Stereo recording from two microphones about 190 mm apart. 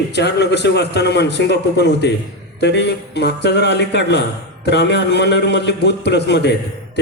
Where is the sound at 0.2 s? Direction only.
60° left (ahead or behind).